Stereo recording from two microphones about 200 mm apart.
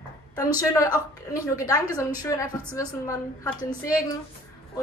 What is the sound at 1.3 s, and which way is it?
A woman's voice, 15° left (ahead or behind).